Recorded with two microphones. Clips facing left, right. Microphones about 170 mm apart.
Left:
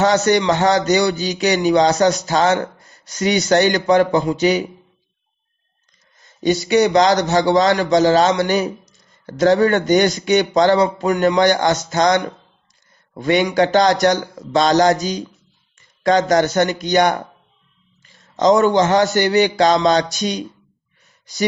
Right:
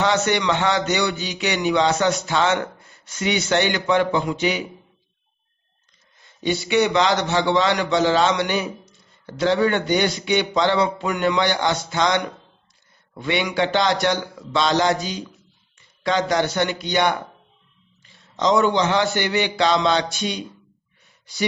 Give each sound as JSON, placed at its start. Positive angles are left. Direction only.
{"t": 0.0, "sound": "a man's voice", "side_deg": 40}
{"t": 6.1, "sound": "a man's voice", "side_deg": 40}